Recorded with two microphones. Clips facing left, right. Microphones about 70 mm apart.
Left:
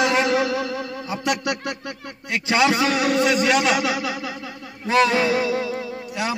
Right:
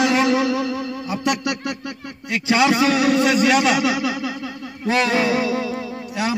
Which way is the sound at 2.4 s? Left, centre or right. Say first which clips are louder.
Right 2 dB; centre.